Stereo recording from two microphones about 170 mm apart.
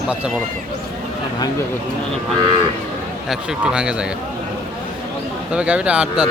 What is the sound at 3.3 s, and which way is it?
Speech, 5° right (ahead or behind).